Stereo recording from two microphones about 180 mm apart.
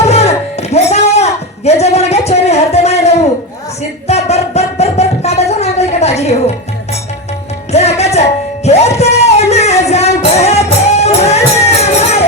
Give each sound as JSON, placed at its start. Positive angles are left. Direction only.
{"t": 0.0, "sound": "music", "side_deg": 35}
{"t": 7.7, "sound": "music", "side_deg": 35}